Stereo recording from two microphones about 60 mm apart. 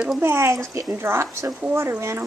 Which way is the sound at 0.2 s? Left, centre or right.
Right.